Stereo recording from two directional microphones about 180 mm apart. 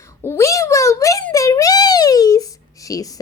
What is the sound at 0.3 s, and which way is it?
A child's voice, 15° left (ahead or behind).